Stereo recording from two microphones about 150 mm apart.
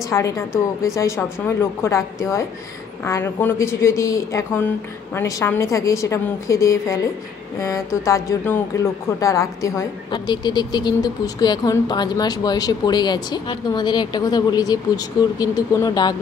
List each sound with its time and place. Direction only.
0.1 s speech: 20° left (ahead or behind)